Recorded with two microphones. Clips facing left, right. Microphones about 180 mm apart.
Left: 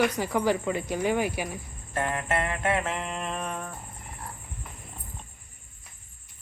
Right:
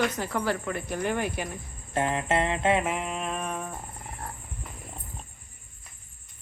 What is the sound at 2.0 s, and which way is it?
Jingle bell, 20° right (ahead or behind).